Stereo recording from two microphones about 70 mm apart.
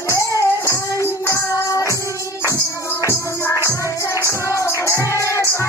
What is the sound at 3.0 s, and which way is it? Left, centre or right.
Music, left.